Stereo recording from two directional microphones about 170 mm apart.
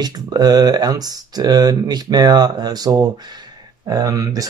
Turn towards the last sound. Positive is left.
turn(degrees=-20)  # may be behind; listen again after turning